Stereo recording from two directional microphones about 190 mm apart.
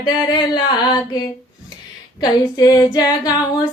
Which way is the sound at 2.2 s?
20° left (ahead or behind).